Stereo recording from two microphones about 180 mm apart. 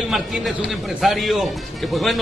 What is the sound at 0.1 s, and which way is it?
A man's voice, centre (ahead or behind).